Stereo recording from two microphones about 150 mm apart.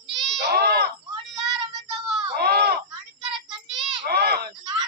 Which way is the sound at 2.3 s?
90° right.